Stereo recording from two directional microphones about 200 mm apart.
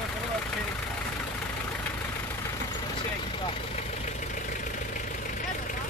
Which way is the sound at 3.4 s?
35° left (ahead or behind).